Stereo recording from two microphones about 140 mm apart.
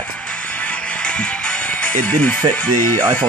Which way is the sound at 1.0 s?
5° left (ahead or behind).